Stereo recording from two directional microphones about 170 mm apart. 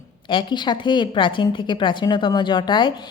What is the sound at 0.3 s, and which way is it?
A woman's voice, 30° left (ahead or behind).